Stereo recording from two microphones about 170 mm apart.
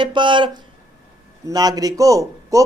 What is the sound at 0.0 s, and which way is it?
A man's voice, 30° right (ahead or behind).